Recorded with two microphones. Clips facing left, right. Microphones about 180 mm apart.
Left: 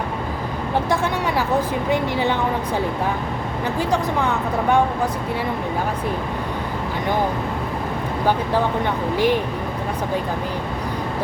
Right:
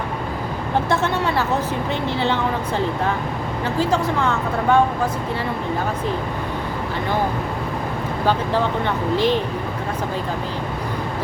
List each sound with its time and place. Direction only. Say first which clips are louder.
0.9 s speech: right 1 dB; 10° left (ahead or behind)
9.1 s speech: even; 10° left (ahead or behind)